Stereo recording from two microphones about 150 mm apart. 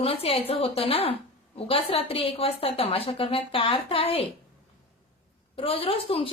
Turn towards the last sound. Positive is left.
turn(degrees=40)  # may be behind; listen again after turning